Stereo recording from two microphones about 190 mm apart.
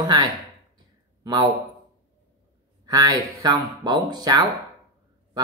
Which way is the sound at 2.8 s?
20° right (ahead or behind).